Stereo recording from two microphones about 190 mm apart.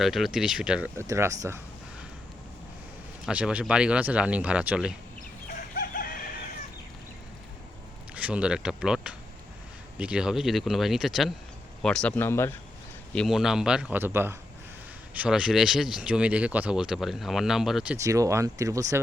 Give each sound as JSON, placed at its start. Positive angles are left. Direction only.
{"t": 0.0, "sound": "speech", "side_deg": 0}
{"t": 1.0, "sound": "speech", "side_deg": -15}
{"t": 3.2, "sound": "speech", "side_deg": -5}
{"t": 5.7, "sound": "chicken", "side_deg": 50}
{"t": 8.1, "sound": "speech", "side_deg": -5}
{"t": 13.1, "sound": "speech", "side_deg": 0}
{"t": 17.9, "sound": "speech", "side_deg": -15}